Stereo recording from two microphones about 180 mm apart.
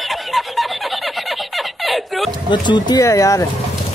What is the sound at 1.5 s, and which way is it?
Snicker, centre (ahead or behind).